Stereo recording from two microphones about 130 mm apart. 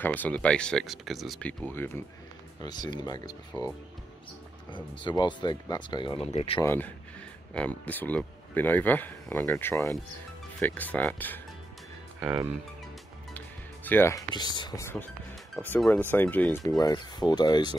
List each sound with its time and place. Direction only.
0.0 s speech: 15° left (ahead or behind)
2.6 s speech: 30° left (ahead or behind); by 6.6 s 50° left (ahead or behind)
6.6 s speech: 15° left (ahead or behind)
13.8 s speech: 20° left (ahead or behind)
14.3 s speech: 35° left (ahead or behind)
14.8 s speech: 20° left (ahead or behind)
16.6 s speech: 25° left (ahead or behind)